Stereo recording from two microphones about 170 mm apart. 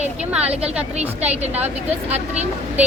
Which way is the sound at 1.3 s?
40° right (ahead or behind).